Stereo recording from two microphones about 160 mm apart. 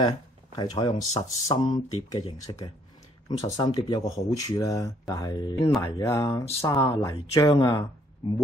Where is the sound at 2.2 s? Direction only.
40° left (ahead or behind).